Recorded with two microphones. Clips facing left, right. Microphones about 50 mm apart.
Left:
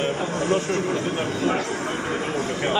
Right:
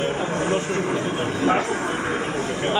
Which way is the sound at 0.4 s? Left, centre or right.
Right.